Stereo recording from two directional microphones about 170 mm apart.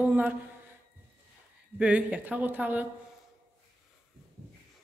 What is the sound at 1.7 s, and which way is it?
A woman's voice, 10° right (ahead or behind).